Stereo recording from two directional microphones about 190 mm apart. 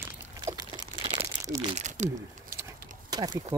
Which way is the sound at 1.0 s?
30° right (ahead or behind).